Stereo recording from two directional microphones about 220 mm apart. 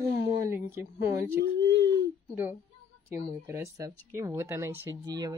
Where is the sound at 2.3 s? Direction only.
10° right (ahead or behind).